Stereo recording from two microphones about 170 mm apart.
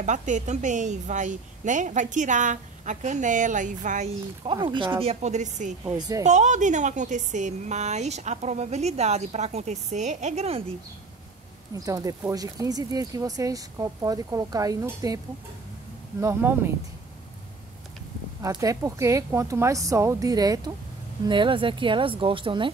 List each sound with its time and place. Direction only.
0.0 s a woman's voice: 45° right (ahead or behind)
4.5 s a woman's voice: 30° right (ahead or behind); by 5.8 s 45° right (ahead or behind)
5.9 s speech: 25° right (ahead or behind)
6.2 s a woman's voice: 45° right (ahead or behind)
11.7 s speech: 20° right (ahead or behind)
16.2 s speech: 15° right (ahead or behind)
18.4 s speech: 20° right (ahead or behind)